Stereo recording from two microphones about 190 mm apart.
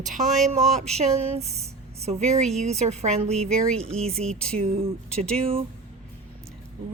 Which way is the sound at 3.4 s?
5° left (ahead or behind).